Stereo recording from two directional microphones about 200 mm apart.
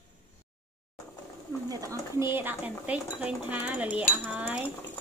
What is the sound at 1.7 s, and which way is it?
A woman's voice, 15° right (ahead or behind).